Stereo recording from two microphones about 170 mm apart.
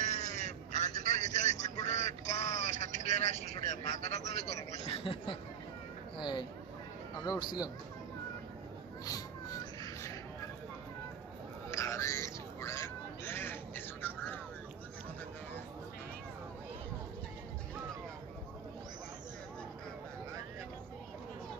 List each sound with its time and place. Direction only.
0.0 s vehicle: 45° left (ahead or behind)
1.9 s speech: 45° left (ahead or behind); by 6.4 s 25° left (ahead or behind)
9.0 s a sound: 20° left (ahead or behind)
11.7 s crow: 15° left (ahead or behind)